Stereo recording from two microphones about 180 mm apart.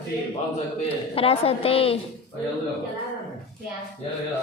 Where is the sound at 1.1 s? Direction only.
30° left (ahead or behind).